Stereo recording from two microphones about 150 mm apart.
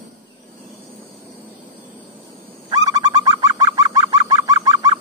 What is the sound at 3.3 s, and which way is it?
Bird, 25° right (ahead or behind).